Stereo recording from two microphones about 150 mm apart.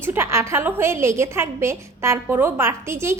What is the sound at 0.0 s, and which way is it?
A woman's voice, 15° right (ahead or behind).